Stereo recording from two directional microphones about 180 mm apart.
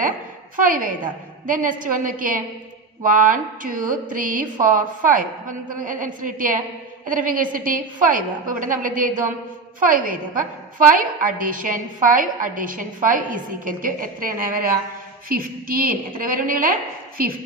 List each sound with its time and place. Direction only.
0.6 s a woman's voice: 50° right (ahead or behind)